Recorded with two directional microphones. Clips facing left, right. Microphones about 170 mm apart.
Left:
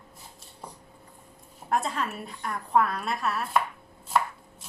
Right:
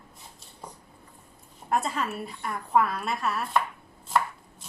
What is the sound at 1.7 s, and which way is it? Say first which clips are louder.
A woman's voice: even; centre (ahead or behind).